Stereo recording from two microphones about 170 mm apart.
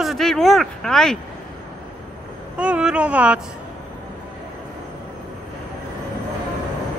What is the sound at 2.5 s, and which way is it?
Speech, 5° right (ahead or behind).